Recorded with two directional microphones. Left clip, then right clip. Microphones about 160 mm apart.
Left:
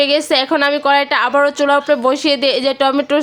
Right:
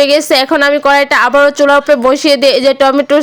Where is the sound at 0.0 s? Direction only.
30° right (ahead or behind).